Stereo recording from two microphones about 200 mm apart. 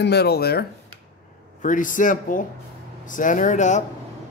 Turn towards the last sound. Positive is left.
turn(degrees=35)  # may be behind; listen again after turning